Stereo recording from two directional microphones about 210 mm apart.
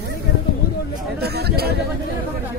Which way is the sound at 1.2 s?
50° right (ahead or behind).